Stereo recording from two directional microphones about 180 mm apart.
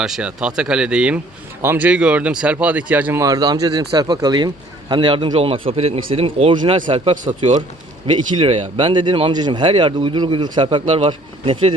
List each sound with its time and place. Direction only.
0.0 s speech: 5° right (ahead or behind); by 11.7 s 30° right (ahead or behind)